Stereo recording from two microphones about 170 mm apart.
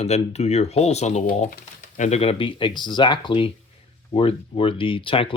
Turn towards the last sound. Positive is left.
turn(degrees=30)  # may be behind; listen again after turning